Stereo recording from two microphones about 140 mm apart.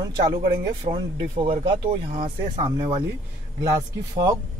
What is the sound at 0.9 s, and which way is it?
Speech, 45° right (ahead or behind).